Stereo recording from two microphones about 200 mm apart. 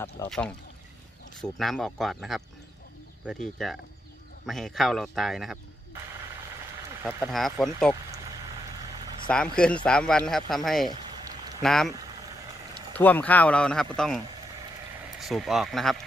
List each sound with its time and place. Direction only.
0.3 s speech: 5° left (ahead or behind)
7.0 s speech: 10° right (ahead or behind)
9.3 s speech: 5° left (ahead or behind)
10.9 s a sound: 20° right (ahead or behind)
11.6 s speech: centre (ahead or behind)
12.9 s speech: 10° left (ahead or behind)